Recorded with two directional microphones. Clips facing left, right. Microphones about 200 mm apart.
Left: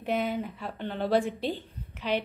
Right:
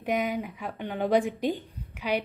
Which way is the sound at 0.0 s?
15° right (ahead or behind).